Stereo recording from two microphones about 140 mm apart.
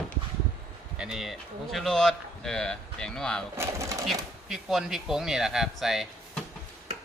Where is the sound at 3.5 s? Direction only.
20° right (ahead or behind).